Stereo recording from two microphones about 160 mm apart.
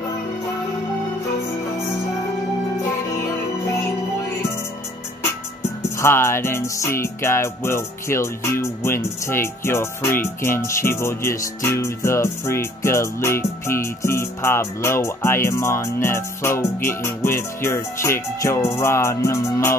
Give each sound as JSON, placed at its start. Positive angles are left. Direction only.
{"t": 5.9, "sound": "music", "side_deg": 15}